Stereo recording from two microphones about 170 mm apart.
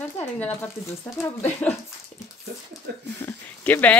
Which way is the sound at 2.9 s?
70° right (ahead or behind).